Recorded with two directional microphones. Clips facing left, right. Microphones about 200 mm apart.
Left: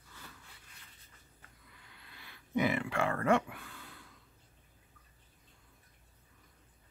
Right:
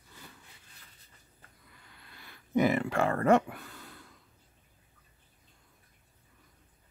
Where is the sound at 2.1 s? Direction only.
45° right (ahead or behind).